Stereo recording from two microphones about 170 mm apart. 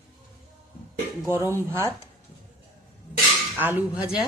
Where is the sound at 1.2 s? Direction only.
15° right (ahead or behind).